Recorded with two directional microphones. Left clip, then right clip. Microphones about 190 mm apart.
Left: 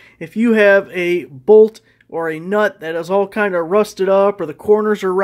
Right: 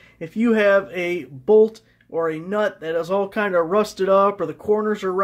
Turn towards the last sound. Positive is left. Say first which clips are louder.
# left 7 dB
turn(degrees=40)  # may be behind; listen again after turning